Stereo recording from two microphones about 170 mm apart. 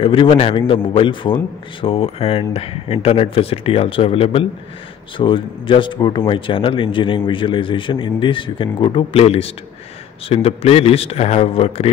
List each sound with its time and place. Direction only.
0.0 s a man's voice: 30° left (ahead or behind)